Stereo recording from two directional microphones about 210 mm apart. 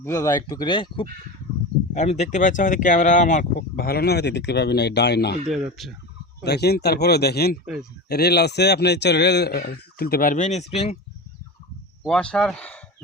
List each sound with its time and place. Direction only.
0.0 s speech: 15° left (ahead or behind)
1.9 s speech: 35° left (ahead or behind); by 5.4 s 50° left (ahead or behind)
5.5 s speech: centre (ahead or behind)
6.4 s speech: 50° left (ahead or behind)
7.6 s speech: 5° right (ahead or behind)
8.1 s speech: 50° left (ahead or behind); by 10.9 s 30° left (ahead or behind)
12.0 s speech: 5° left (ahead or behind)